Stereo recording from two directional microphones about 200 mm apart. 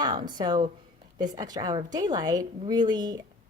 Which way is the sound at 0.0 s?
20° right (ahead or behind).